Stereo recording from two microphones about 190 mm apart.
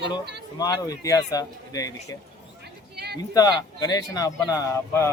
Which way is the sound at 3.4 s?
20° left (ahead or behind).